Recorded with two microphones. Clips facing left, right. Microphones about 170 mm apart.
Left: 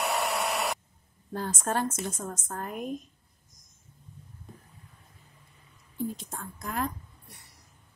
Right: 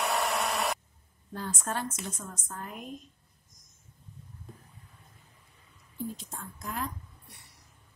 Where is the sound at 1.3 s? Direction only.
45° left (ahead or behind).